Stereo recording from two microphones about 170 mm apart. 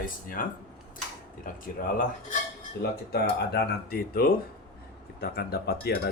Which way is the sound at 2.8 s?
70° left (ahead or behind).